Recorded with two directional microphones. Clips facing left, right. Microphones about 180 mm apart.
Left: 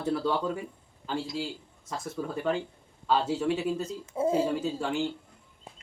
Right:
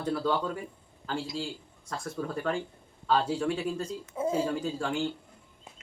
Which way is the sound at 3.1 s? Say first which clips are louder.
Even; 25° left (ahead or behind).